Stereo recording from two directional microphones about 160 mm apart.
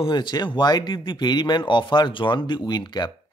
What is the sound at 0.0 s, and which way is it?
Speech, 30° left (ahead or behind).